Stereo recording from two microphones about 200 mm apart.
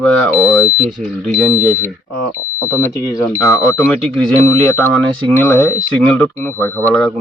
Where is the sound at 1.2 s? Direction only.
5° right (ahead or behind).